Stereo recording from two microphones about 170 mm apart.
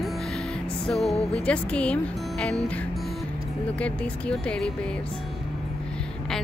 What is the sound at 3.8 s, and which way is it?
Speech, 5° left (ahead or behind).